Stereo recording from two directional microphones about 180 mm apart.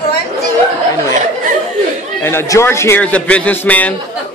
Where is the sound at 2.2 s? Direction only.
15° left (ahead or behind).